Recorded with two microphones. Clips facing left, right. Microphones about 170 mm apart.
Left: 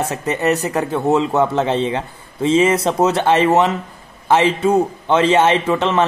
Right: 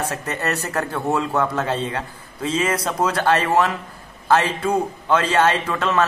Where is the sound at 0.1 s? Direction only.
20° left (ahead or behind).